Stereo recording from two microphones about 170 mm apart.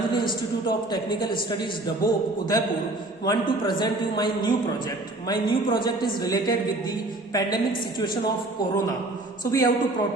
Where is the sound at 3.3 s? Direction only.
25° left (ahead or behind).